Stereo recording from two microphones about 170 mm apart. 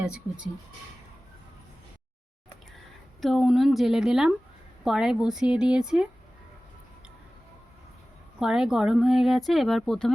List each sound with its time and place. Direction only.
0.0 s speech: 5° right (ahead or behind)
3.2 s speech: centre (ahead or behind)
8.4 s speech: 5° right (ahead or behind)